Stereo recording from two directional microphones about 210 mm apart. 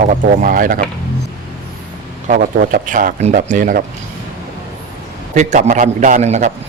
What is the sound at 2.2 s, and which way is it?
Speech, 40° right (ahead or behind).